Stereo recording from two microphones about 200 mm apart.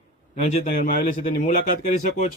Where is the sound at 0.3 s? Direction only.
35° left (ahead or behind).